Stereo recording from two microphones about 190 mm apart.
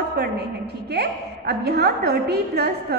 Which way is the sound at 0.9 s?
60° right (ahead or behind).